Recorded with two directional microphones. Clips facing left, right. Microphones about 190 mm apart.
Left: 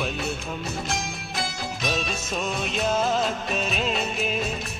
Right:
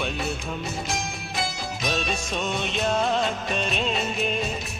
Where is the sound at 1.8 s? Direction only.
Centre (ahead or behind).